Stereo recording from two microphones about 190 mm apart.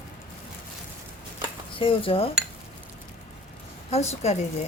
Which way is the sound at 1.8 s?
25° left (ahead or behind).